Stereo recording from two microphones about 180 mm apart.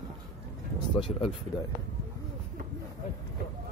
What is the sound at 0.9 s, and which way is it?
Speech, 30° left (ahead or behind).